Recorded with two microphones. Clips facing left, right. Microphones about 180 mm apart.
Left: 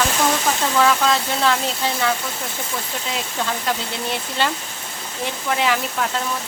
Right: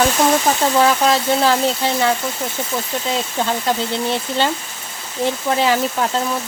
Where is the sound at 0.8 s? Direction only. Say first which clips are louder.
Even; 30° right (ahead or behind).